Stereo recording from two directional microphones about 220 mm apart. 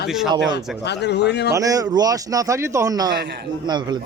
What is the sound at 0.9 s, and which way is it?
Speech, 50° left (ahead or behind).